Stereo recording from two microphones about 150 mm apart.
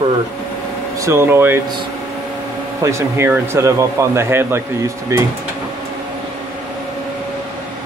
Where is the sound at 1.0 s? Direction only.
15° right (ahead or behind).